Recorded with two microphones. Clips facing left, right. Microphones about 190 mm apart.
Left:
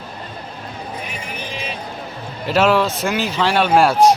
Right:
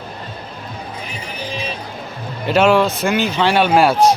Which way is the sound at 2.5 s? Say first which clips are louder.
Right 2 dB; centre (ahead or behind).